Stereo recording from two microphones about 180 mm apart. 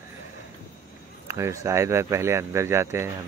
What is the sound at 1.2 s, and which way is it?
Speech, 15° right (ahead or behind).